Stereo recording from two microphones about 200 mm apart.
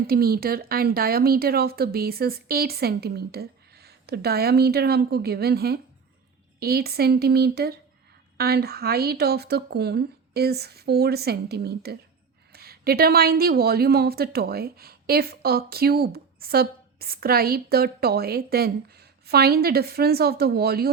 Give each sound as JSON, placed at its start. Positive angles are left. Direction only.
{"t": 0.1, "sound": "speech", "side_deg": -50}